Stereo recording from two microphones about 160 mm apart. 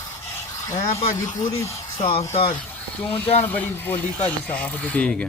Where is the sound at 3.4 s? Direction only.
10° left (ahead or behind).